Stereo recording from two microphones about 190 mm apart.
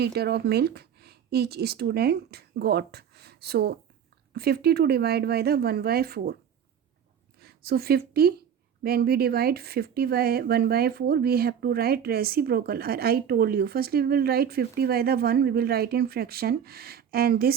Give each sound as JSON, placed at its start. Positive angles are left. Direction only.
{"t": 0.0, "sound": "a woman's voice", "side_deg": -60}
{"t": 7.4, "sound": "a woman's voice", "side_deg": -55}